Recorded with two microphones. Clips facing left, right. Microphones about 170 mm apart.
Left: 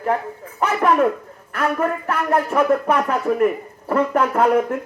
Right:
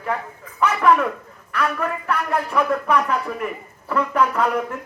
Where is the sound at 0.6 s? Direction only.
45° left (ahead or behind).